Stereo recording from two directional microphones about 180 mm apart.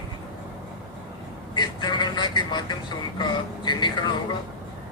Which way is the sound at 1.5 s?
25° left (ahead or behind).